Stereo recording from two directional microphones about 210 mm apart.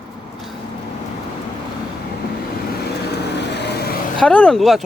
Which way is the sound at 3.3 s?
55° left (ahead or behind).